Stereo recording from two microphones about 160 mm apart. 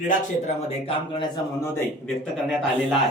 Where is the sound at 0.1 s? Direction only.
50° left (ahead or behind).